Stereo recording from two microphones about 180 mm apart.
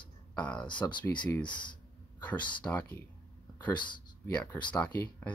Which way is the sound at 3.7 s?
25° left (ahead or behind).